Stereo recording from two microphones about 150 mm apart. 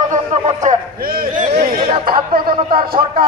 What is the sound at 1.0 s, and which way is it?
Speech, 80° right.